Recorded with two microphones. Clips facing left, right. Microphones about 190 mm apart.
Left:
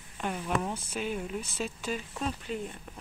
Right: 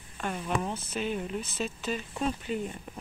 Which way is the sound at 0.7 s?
10° left (ahead or behind).